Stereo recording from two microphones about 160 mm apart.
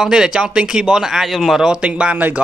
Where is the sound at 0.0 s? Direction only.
5° right (ahead or behind).